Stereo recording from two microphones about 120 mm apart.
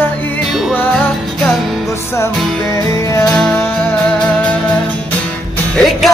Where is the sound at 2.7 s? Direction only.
25° left (ahead or behind).